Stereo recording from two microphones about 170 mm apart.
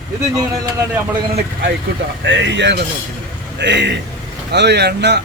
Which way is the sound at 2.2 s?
90° right.